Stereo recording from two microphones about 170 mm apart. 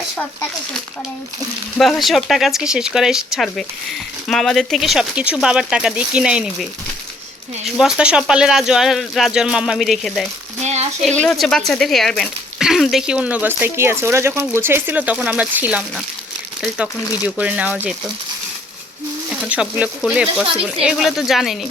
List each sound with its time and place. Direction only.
1.8 s speech: centre (ahead or behind)
10.6 s speech: 40° right (ahead or behind)
11.0 s speech: 5° left (ahead or behind); by 16.0 s 10° right (ahead or behind)
17.2 s speech: 10° right (ahead or behind)
19.3 s speech: 5° right (ahead or behind)